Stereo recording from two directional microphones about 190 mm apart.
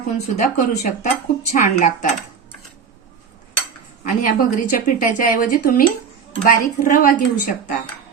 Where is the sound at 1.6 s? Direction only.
45° left (ahead or behind).